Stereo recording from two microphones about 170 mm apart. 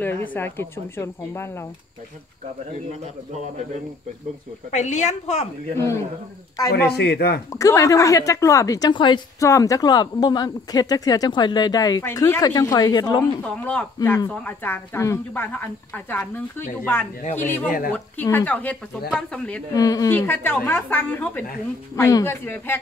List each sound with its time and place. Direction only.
0.0 s speech: 10° left (ahead or behind)
4.6 s a woman's voice: 45° left (ahead or behind)
6.9 s speech: 70° left (ahead or behind)
7.5 s a woman's voice: 20° left (ahead or behind)
13.4 s speech: 10° left (ahead or behind)
19.7 s speech: 20° left (ahead or behind)